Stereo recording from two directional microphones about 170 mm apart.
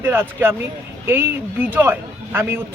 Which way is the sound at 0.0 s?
15° right (ahead or behind).